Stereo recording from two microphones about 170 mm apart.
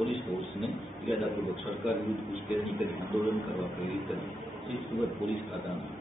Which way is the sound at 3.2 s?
Centre (ahead or behind).